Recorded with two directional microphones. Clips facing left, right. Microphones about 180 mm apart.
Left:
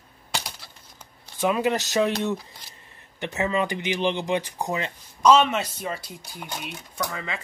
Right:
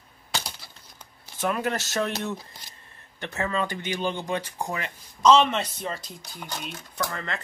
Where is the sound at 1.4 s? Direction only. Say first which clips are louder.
Left 4 dB; 15° left (ahead or behind).